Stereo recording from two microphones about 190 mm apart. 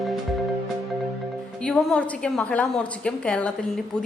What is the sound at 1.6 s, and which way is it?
A woman's voice, 5° left (ahead or behind).